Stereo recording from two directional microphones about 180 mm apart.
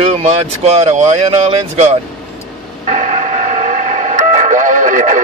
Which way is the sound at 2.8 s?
40° right (ahead or behind).